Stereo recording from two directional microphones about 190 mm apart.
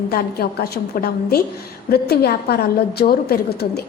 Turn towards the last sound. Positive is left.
turn(degrees=55)  # may be behind; listen again after turning